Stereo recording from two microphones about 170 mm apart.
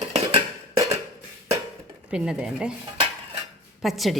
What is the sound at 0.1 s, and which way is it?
Music, 35° right (ahead or behind).